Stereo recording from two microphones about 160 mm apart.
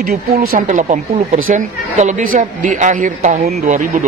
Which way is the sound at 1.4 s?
50° right (ahead or behind).